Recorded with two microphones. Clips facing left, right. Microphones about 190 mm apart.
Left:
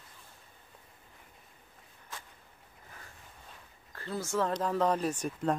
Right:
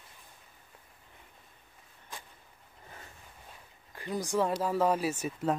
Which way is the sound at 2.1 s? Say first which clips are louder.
Right 1 dB; 15° right (ahead or behind).